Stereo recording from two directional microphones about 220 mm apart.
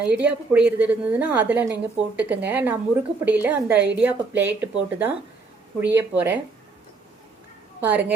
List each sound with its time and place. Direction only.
0.0 s a woman's voice: 5° right (ahead or behind)
7.8 s a woman's voice: 10° right (ahead or behind)